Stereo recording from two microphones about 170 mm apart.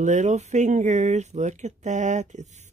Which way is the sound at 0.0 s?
45° right (ahead or behind).